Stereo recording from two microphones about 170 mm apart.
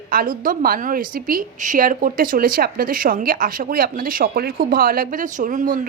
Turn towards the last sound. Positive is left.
turn(degrees=-50)  # may be behind; listen again after turning